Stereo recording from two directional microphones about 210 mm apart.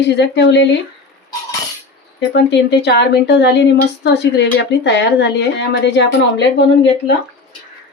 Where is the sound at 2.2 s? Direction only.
55° left (ahead or behind).